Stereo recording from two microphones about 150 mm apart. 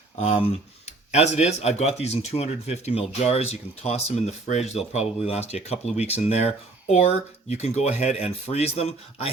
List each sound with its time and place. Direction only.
0.2 s speech: 45° left (ahead or behind)
7.5 s speech: 45° left (ahead or behind)